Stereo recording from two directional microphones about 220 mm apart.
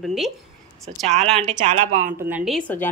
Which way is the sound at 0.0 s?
Centre (ahead or behind).